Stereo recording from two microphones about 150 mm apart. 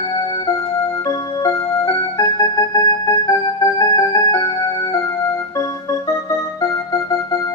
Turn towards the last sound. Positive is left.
turn(degrees=25)  # may be behind; listen again after turning